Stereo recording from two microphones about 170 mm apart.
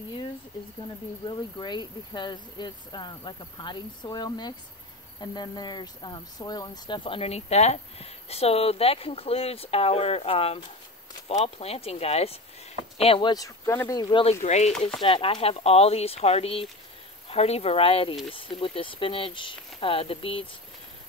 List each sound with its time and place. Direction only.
1.6 s speech: 25° left (ahead or behind)
14.2 s speech: 40° left (ahead or behind)
14.8 s speech: 30° left (ahead or behind)